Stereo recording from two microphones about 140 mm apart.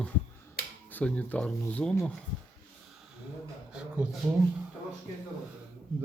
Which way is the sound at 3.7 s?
5° right (ahead or behind).